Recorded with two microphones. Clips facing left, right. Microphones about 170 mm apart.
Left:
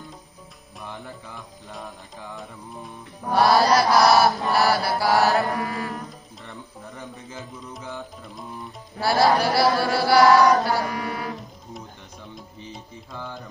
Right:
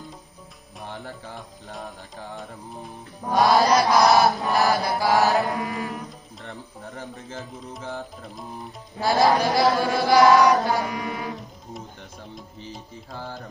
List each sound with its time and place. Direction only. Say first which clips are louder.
0.8 s music: right 1 dB; 35° right (ahead or behind)
3.3 s chant: even; 20° right (ahead or behind)
6.4 s bird: right 2 dB; 35° right (ahead or behind)
7.8 s music: right 3 dB; 35° right (ahead or behind)
8.9 s chant: even; 20° right (ahead or behind)
12.4 s music: right 1 dB; centre (ahead or behind)